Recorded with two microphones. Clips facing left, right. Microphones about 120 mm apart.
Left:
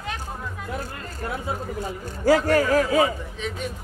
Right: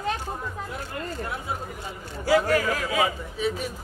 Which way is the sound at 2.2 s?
40° left (ahead or behind).